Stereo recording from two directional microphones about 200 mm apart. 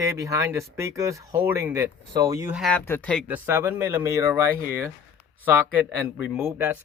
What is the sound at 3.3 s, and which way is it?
Speech, 10° right (ahead or behind).